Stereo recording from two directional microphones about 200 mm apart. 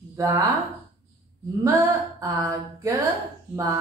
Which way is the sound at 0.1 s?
15° right (ahead or behind).